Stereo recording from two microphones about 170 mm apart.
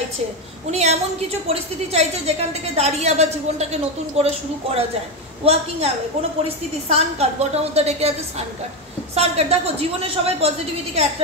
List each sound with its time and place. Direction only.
0.7 s a woman's voice: 40° right (ahead or behind)
6.9 s a woman's voice: 40° right (ahead or behind)